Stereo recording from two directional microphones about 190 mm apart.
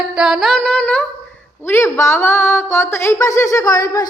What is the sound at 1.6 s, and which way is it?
A woman's voice, 15° left (ahead or behind).